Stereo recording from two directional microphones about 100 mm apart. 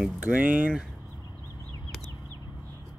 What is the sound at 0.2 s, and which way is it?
Speech, 15° right (ahead or behind).